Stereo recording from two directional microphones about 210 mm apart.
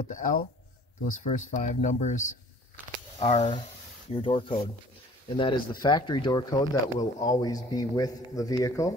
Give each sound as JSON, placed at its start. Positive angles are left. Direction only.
{"t": 0.0, "sound": "speech", "side_deg": 35}